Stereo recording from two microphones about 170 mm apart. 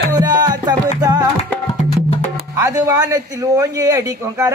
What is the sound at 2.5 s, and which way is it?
A man's voice, 15° right (ahead or behind).